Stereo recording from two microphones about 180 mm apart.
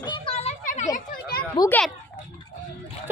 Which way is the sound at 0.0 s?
30° left (ahead or behind).